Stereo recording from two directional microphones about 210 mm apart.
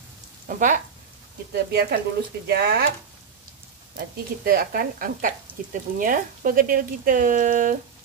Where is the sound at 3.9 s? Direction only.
45° right (ahead or behind).